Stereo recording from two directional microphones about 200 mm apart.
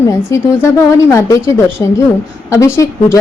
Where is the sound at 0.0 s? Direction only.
15° left (ahead or behind).